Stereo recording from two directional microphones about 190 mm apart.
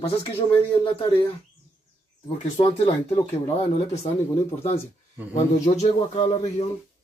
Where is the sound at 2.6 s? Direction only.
30° left (ahead or behind).